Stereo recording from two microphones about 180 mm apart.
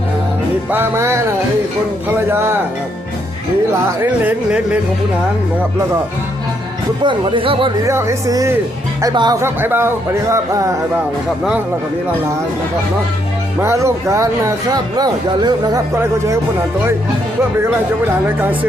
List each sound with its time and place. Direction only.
0.7 s speech: 10° right (ahead or behind)
4.2 s speech: 10° right (ahead or behind)
7.0 s speech: 25° right (ahead or behind)
7.9 s speech: 15° right (ahead or behind)
13.6 s speech: 15° right (ahead or behind)
17.6 s speech: 10° right (ahead or behind)